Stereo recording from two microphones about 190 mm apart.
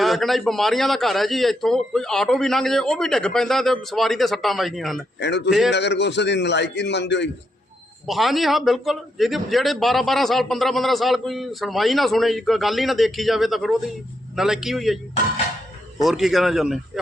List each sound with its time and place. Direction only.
0.0 s a man's voice: centre (ahead or behind)
5.7 s a man's voice: 65° left (ahead or behind)
8.0 s a man's voice: centre (ahead or behind)
16.0 s a man's voice: centre (ahead or behind)